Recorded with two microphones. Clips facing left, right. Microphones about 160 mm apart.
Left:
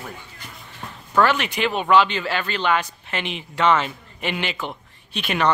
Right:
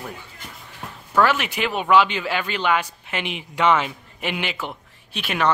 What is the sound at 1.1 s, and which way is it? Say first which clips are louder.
Speech: even; 5° right (ahead or behind).